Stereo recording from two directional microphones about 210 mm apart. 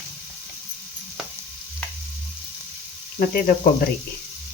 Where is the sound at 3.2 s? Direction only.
45° left (ahead or behind).